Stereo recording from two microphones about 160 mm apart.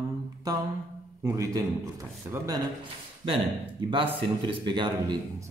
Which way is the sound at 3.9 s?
30° right (ahead or behind).